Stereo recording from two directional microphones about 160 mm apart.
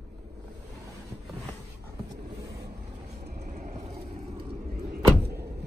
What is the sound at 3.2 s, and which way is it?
Vehicle, 75° right (ahead or behind).